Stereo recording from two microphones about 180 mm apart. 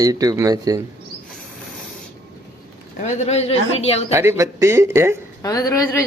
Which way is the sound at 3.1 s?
40° left (ahead or behind).